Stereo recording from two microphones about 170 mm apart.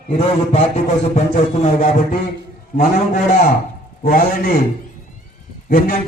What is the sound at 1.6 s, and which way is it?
A man's voice, 45° left (ahead or behind).